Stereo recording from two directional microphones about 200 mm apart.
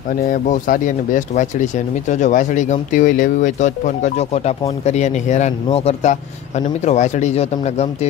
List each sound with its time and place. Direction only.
0.3 s speech: 40° left (ahead or behind)